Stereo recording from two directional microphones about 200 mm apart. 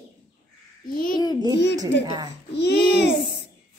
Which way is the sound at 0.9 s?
45° left (ahead or behind).